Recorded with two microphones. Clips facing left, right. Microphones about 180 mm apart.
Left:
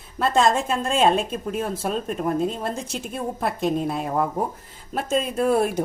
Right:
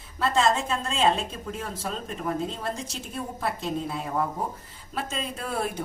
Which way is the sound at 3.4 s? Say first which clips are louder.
Left 6 dB; 60° left (ahead or behind).